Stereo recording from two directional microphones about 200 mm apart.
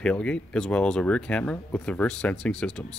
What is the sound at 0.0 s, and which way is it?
Speech, 5° left (ahead or behind).